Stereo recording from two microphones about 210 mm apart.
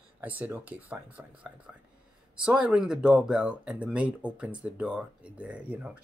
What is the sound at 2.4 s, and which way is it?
Speech, 5° right (ahead or behind).